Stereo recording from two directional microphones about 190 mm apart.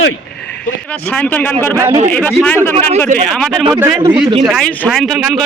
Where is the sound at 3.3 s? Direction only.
5° left (ahead or behind).